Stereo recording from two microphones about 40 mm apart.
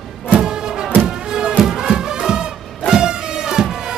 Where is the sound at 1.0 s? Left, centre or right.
Centre.